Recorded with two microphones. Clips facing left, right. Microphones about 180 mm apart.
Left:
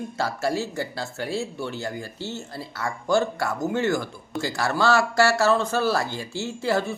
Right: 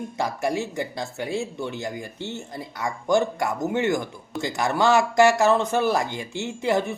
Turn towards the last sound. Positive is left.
turn(degrees=-20)  # may be behind; listen again after turning